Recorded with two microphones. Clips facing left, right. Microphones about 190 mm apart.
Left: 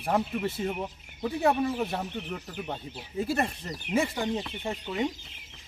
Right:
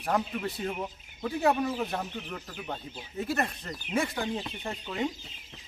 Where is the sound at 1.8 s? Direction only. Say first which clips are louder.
Left 2 dB; 15° left (ahead or behind).